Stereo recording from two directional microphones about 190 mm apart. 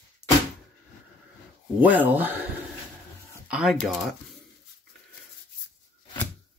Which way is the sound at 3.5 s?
5° right (ahead or behind).